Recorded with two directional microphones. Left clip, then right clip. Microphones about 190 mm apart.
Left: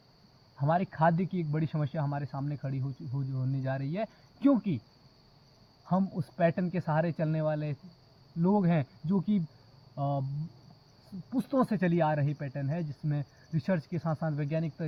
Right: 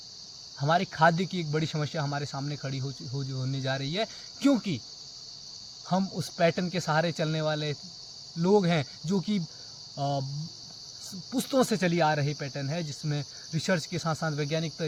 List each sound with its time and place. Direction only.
0.6 s speech: 25° right (ahead or behind)
5.9 s speech: 25° right (ahead or behind)
11.3 s speech: 25° right (ahead or behind)